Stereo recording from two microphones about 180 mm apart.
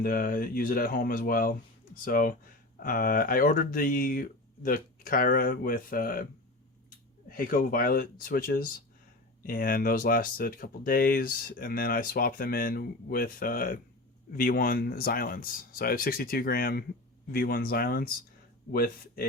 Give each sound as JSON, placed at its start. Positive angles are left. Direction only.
{"t": 0.0, "sound": "speech", "side_deg": 50}
{"t": 7.3, "sound": "speech", "side_deg": 50}